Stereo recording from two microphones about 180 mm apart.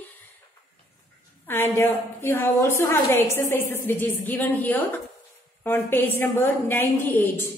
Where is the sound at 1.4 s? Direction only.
15° left (ahead or behind).